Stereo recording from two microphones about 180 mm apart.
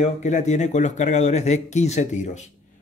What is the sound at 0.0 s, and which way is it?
Speech, 40° left (ahead or behind).